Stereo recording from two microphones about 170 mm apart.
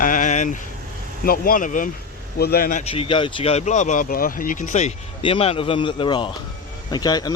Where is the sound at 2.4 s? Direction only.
60° left (ahead or behind).